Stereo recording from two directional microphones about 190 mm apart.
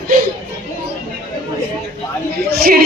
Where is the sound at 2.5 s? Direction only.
50° right (ahead or behind).